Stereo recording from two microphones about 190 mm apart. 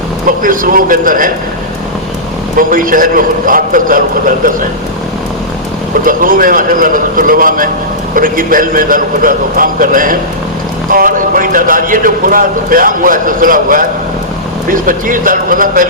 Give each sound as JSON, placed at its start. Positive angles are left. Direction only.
{"t": 0.3, "sound": "a man's voice", "side_deg": -45}
{"t": 2.6, "sound": "a man's voice", "side_deg": -45}
{"t": 6.1, "sound": "a man's voice", "side_deg": -45}